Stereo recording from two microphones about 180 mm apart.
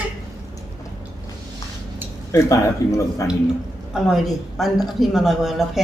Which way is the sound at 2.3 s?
15° left (ahead or behind).